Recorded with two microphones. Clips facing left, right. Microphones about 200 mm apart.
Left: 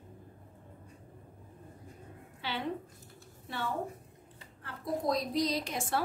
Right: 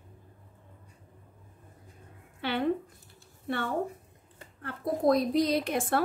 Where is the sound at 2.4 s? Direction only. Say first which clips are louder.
Right 8 dB; 55° right (ahead or behind).